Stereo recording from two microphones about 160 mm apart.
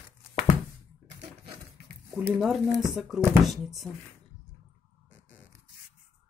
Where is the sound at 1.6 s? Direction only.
15° right (ahead or behind).